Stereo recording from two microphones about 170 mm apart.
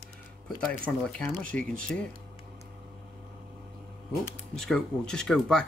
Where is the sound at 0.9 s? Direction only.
5° left (ahead or behind).